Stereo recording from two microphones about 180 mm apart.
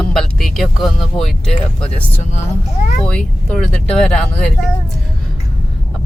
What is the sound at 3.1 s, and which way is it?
Speech, 5° left (ahead or behind).